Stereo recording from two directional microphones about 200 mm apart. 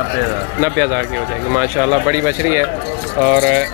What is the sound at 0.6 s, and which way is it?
Speech, 15° right (ahead or behind).